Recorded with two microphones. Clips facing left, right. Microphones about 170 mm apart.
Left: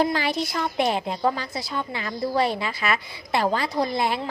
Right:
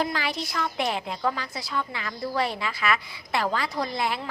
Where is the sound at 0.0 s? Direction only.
30° left (ahead or behind).